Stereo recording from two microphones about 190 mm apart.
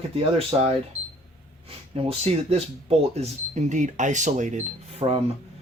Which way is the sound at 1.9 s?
30° right (ahead or behind).